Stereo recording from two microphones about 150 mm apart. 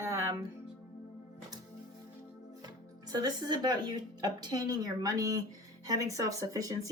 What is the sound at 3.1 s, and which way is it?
Speech, 25° right (ahead or behind).